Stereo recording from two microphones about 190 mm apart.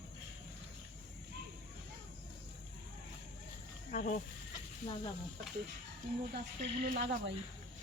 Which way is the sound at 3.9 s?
40° left (ahead or behind).